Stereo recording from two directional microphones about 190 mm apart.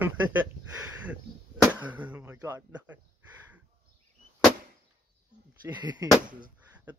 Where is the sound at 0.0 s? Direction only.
10° right (ahead or behind).